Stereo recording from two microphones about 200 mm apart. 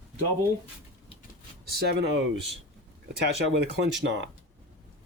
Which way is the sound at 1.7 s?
50° right (ahead or behind).